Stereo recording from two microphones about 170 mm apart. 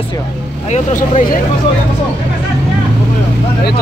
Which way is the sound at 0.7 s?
45° left (ahead or behind).